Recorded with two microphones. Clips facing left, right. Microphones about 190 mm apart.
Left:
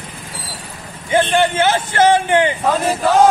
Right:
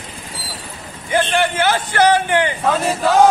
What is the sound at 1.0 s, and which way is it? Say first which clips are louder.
Speech: left 3 dB; 25° left (ahead or behind).